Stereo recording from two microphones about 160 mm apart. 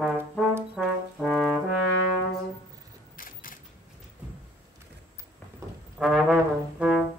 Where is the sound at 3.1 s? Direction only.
60° left (ahead or behind).